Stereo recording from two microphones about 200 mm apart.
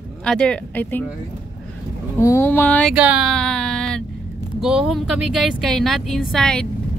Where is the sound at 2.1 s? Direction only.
15° left (ahead or behind).